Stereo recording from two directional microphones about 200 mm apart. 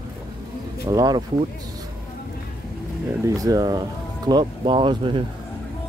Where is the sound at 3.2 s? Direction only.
15° right (ahead or behind).